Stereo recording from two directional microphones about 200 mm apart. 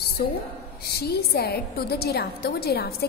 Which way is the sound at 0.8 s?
55° left (ahead or behind).